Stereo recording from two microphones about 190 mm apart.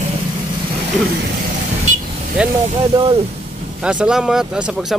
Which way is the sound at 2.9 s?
30° right (ahead or behind).